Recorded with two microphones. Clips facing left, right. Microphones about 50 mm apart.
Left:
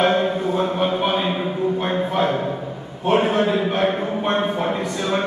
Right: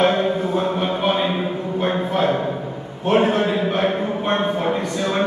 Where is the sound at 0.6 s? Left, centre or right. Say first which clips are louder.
Left 1 dB; centre.